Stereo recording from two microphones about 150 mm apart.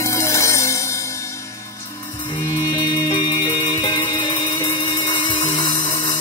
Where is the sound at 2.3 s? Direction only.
25° left (ahead or behind).